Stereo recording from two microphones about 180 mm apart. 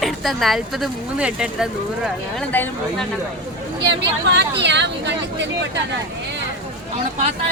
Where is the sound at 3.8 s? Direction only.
70° right (ahead or behind).